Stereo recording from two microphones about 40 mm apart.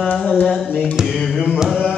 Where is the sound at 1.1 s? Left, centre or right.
Centre.